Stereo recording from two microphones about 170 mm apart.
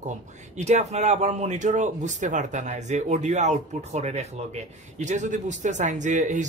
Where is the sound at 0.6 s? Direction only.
40° right (ahead or behind).